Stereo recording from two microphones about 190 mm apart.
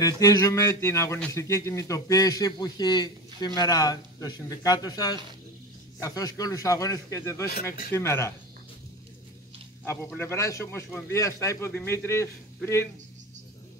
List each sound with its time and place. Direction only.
0.0 s a man's voice: 15° left (ahead or behind)
9.8 s a man's voice: 10° left (ahead or behind)